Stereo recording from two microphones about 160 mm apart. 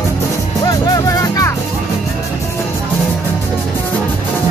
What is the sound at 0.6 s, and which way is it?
Music, 20° left (ahead or behind).